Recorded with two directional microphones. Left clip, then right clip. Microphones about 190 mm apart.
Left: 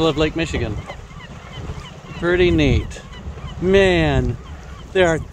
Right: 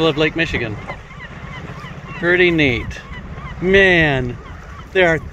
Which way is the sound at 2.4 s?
60° left (ahead or behind).